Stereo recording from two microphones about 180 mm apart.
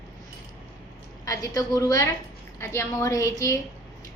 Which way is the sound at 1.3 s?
20° left (ahead or behind).